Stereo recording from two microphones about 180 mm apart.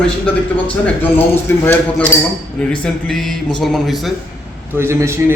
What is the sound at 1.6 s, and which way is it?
Speech, 10° left (ahead or behind).